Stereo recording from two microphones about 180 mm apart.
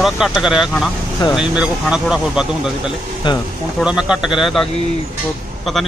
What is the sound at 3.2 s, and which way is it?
Speech, 25° left (ahead or behind).